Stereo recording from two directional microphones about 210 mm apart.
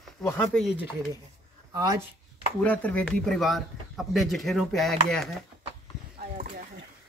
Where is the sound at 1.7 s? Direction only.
20° right (ahead or behind).